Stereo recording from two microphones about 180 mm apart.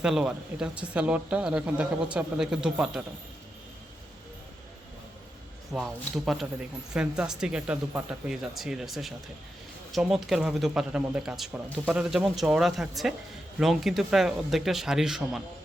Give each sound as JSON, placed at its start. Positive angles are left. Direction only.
{"t": 0.0, "sound": "speech", "side_deg": -5}
{"t": 5.7, "sound": "speech", "side_deg": 0}